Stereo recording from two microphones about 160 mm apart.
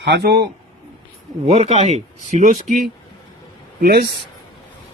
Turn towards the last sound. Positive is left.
turn(degrees=-70)  # may be behind; listen again after turning